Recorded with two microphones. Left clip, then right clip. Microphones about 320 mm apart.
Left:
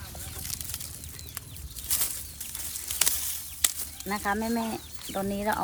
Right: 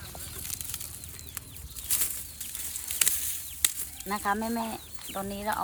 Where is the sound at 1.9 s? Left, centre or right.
Centre.